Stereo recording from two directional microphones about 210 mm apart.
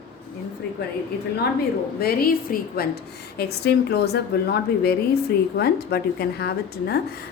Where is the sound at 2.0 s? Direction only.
45° left (ahead or behind).